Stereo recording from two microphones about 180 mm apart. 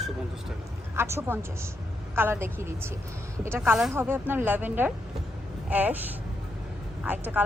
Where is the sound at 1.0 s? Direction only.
15° right (ahead or behind).